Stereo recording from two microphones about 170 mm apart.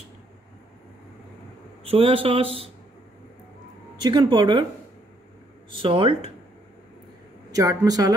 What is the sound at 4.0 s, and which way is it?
Speech, 25° right (ahead or behind).